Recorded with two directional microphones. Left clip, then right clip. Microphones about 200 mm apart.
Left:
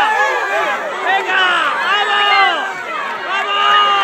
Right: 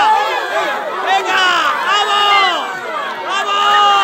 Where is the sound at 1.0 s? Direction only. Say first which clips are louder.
Right 1 dB; 5° right (ahead or behind).